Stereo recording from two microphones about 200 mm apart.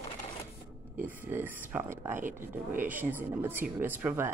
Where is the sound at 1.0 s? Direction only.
10° right (ahead or behind).